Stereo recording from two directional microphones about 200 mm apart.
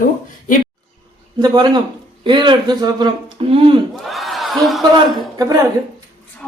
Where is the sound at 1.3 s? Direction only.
20° right (ahead or behind).